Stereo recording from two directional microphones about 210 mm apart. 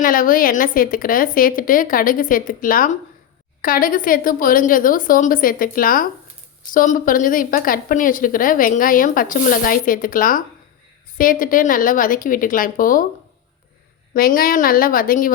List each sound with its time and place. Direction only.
0.0 s a woman's voice: 40° left (ahead or behind)
14.1 s a woman's voice: 45° left (ahead or behind)